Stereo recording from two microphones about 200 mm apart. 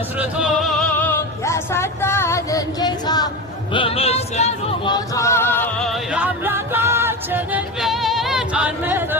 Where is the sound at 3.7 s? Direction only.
25° left (ahead or behind).